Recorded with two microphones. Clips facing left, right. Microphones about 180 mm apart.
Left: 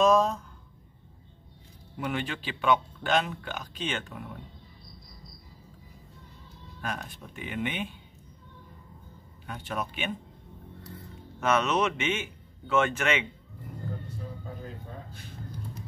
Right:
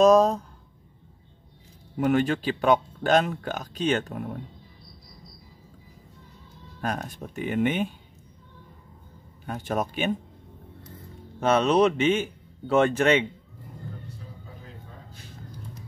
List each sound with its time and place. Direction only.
0.0 s a sound: 40° right (ahead or behind)
2.0 s speech: 45° right (ahead or behind)
6.8 s speech: 45° right (ahead or behind)
9.5 s speech: 45° right (ahead or behind)
10.9 s speech: 30° right (ahead or behind)